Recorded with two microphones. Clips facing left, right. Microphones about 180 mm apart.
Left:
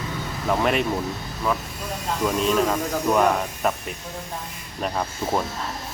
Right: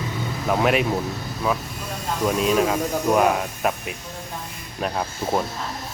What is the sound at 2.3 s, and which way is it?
Speech, 5° right (ahead or behind).